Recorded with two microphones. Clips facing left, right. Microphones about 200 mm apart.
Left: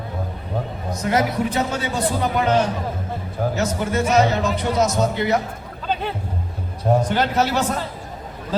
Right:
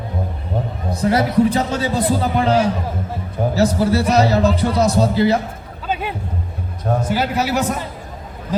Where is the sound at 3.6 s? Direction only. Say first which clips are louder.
Right 8 dB; 35° right (ahead or behind).